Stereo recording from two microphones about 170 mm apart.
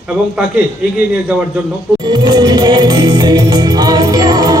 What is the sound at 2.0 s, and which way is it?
Music, 25° right (ahead or behind).